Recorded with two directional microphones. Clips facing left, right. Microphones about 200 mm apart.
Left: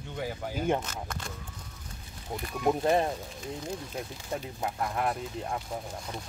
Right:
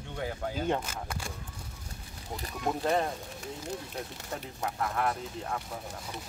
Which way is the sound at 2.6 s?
20° left (ahead or behind).